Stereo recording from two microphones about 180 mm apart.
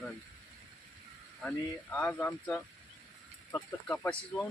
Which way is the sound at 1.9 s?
10° left (ahead or behind).